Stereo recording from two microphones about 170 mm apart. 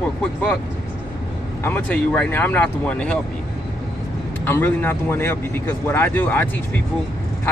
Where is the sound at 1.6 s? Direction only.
10° left (ahead or behind).